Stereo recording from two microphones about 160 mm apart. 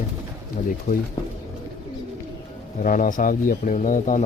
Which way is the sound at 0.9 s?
60° left (ahead or behind).